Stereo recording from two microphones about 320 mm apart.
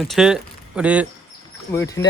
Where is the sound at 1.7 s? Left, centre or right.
Centre.